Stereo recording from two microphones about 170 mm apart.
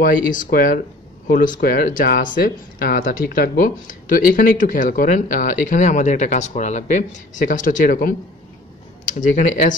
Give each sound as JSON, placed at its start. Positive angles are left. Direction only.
{"t": 0.0, "sound": "speech", "side_deg": 50}